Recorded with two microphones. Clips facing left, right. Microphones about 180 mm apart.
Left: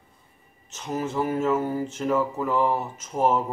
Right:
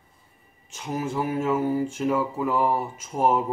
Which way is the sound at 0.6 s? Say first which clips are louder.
Even; 10° right (ahead or behind).